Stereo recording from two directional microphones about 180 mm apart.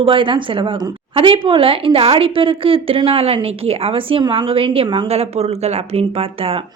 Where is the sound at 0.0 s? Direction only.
30° right (ahead or behind).